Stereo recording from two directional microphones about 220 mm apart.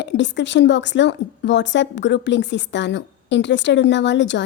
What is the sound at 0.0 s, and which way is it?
A woman's voice, 55° left (ahead or behind).